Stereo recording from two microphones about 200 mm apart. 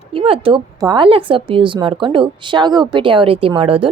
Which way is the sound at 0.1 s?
25° right (ahead or behind).